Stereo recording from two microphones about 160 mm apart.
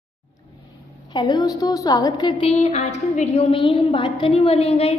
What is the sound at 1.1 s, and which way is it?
A woman's voice, 25° left (ahead or behind).